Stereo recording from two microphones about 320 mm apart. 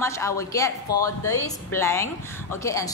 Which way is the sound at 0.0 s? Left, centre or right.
Centre.